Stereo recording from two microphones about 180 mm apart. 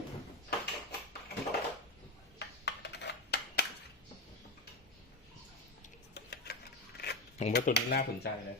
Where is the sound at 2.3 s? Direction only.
70° left (ahead or behind).